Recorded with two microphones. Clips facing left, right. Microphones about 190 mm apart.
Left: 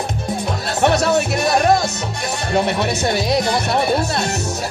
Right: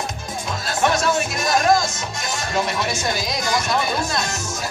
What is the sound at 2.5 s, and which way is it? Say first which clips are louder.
Speech: left 5 dB; 60° left (ahead or behind).